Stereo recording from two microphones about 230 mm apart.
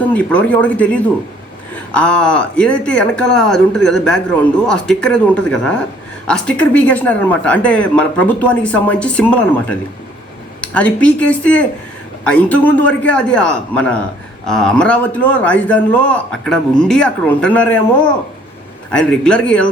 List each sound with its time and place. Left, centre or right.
0.1 s a man's voice: centre
18.9 s speech: centre